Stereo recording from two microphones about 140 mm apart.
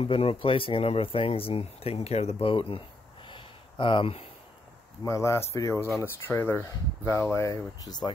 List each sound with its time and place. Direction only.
0.0 s speech: 40° left (ahead or behind)
3.3 s a sound: 35° left (ahead or behind)
5.0 s speech: 20° left (ahead or behind)